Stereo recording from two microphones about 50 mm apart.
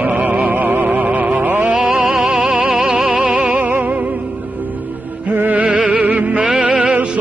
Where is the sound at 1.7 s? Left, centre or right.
Right.